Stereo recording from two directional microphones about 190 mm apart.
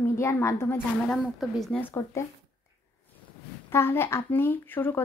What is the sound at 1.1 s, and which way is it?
Speech, centre (ahead or behind).